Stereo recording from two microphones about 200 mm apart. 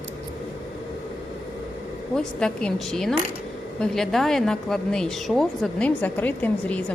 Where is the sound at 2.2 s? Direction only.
5° left (ahead or behind).